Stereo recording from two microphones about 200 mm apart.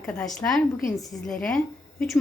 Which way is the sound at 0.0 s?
5° left (ahead or behind).